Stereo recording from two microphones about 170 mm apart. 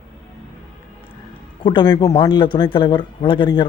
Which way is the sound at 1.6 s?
25° left (ahead or behind).